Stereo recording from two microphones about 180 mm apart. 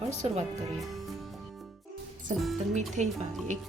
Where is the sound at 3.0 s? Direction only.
40° right (ahead or behind).